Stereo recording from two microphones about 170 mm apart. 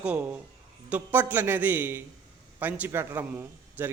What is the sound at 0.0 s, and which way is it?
A man's voice, 10° right (ahead or behind).